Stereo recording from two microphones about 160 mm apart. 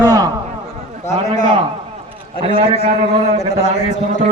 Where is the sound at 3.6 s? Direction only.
45° left (ahead or behind).